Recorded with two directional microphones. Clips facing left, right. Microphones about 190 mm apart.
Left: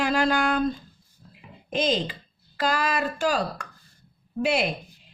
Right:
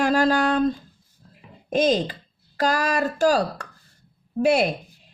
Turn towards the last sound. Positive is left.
turn(degrees=-45)  # may be behind; listen again after turning